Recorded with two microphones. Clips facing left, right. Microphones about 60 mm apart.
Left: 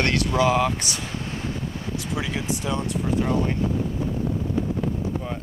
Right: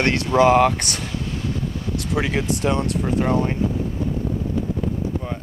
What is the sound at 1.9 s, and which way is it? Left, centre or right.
Speech, right.